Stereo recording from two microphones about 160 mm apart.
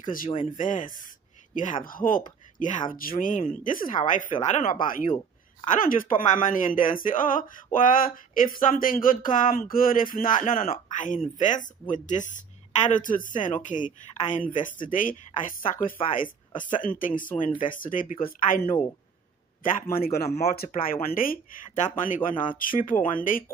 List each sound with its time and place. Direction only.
0.0 s speech: 60° left (ahead or behind)
15.8 s speech: 35° left (ahead or behind)
16.8 s a man's voice: 60° left (ahead or behind)